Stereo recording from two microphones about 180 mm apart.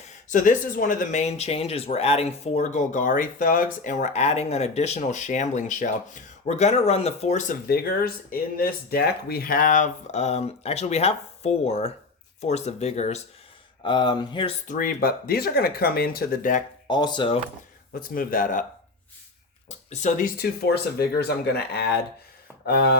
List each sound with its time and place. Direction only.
0.0 s speech: 45° left (ahead or behind)
13.8 s speech: 25° left (ahead or behind)
14.7 s speech: 50° left (ahead or behind)
16.9 s speech: 25° left (ahead or behind)
18.1 s speech: 50° left (ahead or behind)
19.6 s speech: 40° left (ahead or behind); by 23.0 s 60° left (ahead or behind)